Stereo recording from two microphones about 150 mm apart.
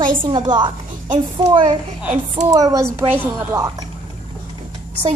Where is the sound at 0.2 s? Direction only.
30° right (ahead or behind).